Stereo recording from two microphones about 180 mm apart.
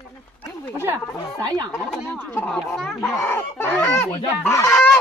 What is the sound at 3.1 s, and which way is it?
Speech, 10° left (ahead or behind).